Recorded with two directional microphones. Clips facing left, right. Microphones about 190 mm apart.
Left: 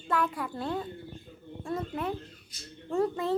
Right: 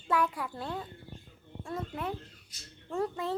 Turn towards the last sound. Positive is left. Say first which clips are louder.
# left 5 dB
turn(degrees=-5)  # may be behind; listen again after turning